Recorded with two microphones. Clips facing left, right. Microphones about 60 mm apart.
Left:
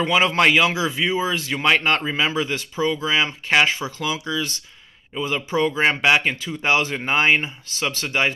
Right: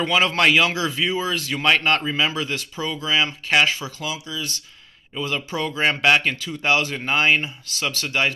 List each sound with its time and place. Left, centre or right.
0.0 s speech: centre
4.0 s speech: left
5.1 s speech: left